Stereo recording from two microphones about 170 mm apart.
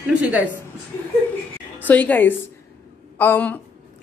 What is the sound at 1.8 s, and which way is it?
Speech, 10° left (ahead or behind).